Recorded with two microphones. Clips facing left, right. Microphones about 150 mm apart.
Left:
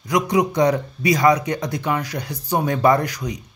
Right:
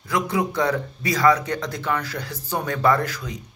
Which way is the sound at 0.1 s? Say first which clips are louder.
Left 4 dB; 15° left (ahead or behind).